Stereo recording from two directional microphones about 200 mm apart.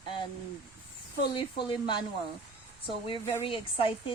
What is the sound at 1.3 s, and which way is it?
Speech, 25° left (ahead or behind).